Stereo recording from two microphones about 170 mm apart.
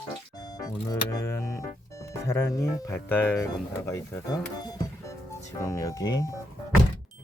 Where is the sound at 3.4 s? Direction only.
25° left (ahead or behind).